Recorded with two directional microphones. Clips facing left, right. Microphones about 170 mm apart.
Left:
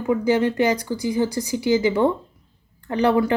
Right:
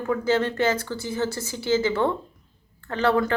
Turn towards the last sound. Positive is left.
turn(degrees=15)  # may be behind; listen again after turning